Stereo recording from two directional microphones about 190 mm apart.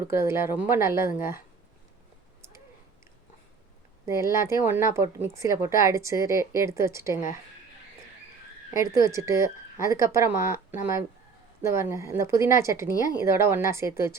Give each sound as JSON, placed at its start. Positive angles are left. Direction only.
{"t": 0.1, "sound": "a woman's voice", "side_deg": -15}
{"t": 4.0, "sound": "a woman's voice", "side_deg": -15}
{"t": 8.7, "sound": "a woman's voice", "side_deg": -15}